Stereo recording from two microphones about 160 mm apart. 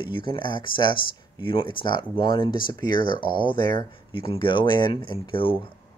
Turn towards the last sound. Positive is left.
turn(degrees=35)  # may be behind; listen again after turning